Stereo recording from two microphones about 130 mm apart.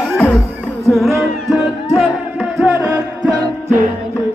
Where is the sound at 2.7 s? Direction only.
15° right (ahead or behind).